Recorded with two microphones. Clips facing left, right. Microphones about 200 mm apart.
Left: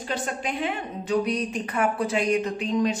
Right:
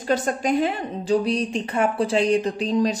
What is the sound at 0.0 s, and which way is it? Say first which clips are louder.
A woman's voice: right 7 dB; 45° right (ahead or behind).